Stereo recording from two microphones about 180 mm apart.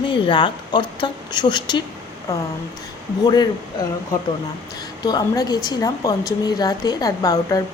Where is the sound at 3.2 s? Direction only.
25° left (ahead or behind).